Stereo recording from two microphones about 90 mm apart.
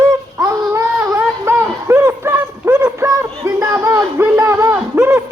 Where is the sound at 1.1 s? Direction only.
30° right (ahead or behind).